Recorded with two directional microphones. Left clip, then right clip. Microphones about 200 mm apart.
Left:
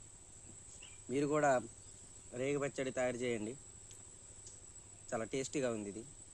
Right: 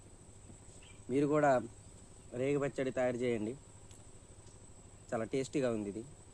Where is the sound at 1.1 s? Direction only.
Centre (ahead or behind).